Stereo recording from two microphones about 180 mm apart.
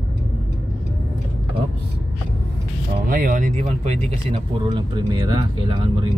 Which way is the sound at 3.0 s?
50° right (ahead or behind).